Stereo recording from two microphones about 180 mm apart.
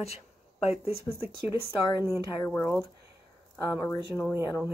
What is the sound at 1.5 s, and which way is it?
Speech, 20° left (ahead or behind).